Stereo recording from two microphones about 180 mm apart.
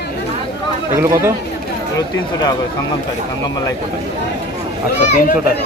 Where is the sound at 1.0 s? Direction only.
15° right (ahead or behind).